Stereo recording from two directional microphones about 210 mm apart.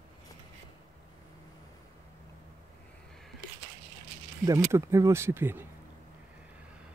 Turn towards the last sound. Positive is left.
turn(degrees=-10)  # may be behind; listen again after turning